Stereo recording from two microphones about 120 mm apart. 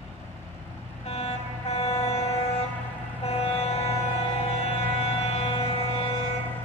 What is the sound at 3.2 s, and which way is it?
Music, 55° left (ahead or behind).